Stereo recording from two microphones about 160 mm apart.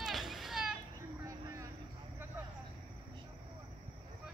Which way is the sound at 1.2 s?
20° right (ahead or behind).